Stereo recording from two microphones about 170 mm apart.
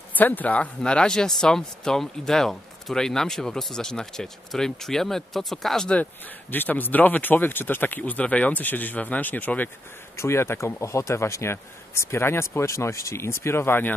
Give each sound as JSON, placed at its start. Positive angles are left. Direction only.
{"t": 0.1, "sound": "speech", "side_deg": 10}